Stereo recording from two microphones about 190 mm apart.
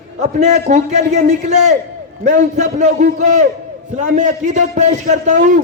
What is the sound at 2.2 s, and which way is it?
A man's voice, 40° right (ahead or behind).